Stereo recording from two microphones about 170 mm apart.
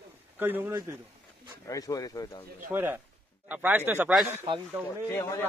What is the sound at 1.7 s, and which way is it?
Speech, 20° left (ahead or behind).